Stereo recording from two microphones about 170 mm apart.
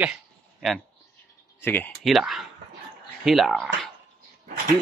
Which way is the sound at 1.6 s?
10° left (ahead or behind).